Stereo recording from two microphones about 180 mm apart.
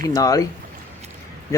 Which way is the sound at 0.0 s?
20° left (ahead or behind).